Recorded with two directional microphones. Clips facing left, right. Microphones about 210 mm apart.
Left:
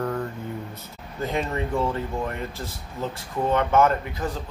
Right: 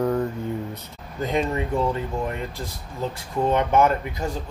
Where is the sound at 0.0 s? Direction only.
10° right (ahead or behind).